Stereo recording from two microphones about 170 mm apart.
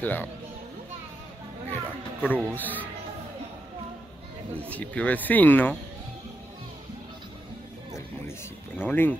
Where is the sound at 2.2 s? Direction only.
10° left (ahead or behind).